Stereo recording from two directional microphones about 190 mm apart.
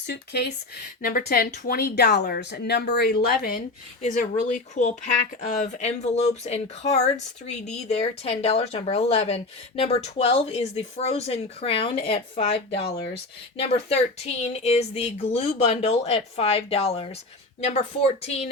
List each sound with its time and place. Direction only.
0.1 s speech: 60° left (ahead or behind)
4.0 s speech: 40° left (ahead or behind)